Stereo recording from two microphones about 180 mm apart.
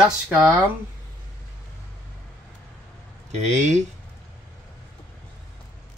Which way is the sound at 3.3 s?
40° right (ahead or behind).